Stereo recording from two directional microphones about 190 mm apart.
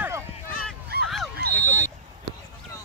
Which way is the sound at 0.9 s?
55° right (ahead or behind).